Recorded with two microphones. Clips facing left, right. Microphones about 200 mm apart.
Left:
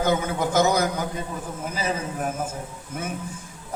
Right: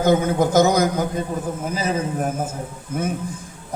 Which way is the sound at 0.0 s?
40° right (ahead or behind).